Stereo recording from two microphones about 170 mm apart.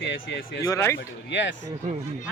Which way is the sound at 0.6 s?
20° left (ahead or behind).